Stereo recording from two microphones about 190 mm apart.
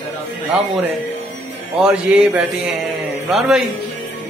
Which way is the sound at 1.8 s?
5° right (ahead or behind).